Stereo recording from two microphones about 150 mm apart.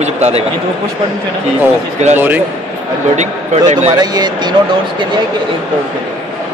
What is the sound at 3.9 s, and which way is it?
Speech, 25° right (ahead or behind).